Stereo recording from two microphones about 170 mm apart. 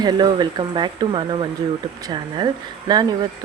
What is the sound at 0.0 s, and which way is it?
Speech, 25° right (ahead or behind).